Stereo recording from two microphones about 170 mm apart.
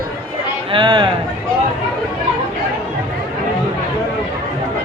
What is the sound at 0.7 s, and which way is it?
Speech, 25° right (ahead or behind).